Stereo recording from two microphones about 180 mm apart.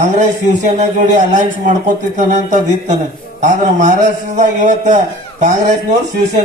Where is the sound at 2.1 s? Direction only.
40° right (ahead or behind).